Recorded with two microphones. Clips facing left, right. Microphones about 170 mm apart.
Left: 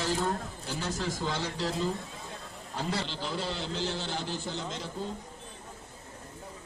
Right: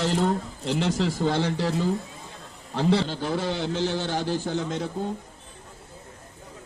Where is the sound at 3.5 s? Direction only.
65° right (ahead or behind).